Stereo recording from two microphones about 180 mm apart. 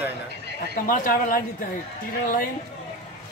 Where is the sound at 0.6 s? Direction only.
50° left (ahead or behind).